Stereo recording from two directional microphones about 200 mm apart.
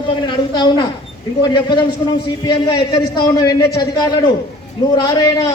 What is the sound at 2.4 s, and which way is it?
Speech, 20° left (ahead or behind).